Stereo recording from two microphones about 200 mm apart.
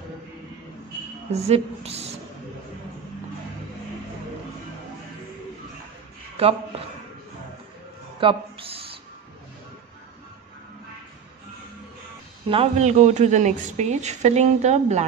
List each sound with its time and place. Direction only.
1.3 s a woman's voice: 30° right (ahead or behind)
8.2 s a sound: 25° right (ahead or behind)
12.4 s a woman's voice: 30° right (ahead or behind)